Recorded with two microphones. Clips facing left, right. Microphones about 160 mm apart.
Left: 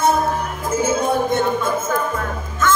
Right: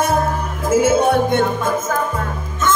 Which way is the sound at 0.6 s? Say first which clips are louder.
Right 6 dB; 90° right.